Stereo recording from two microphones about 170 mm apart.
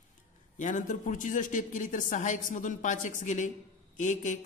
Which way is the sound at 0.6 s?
50° left (ahead or behind).